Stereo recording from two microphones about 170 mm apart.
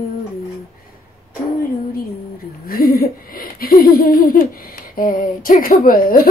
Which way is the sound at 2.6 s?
60° left (ahead or behind).